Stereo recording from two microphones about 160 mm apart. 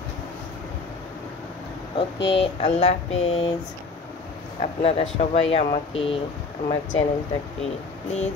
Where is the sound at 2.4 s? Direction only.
45° left (ahead or behind).